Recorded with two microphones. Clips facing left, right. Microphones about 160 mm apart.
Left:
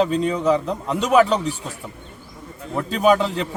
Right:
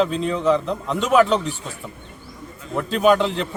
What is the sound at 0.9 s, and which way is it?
Speech, 40° left (ahead or behind).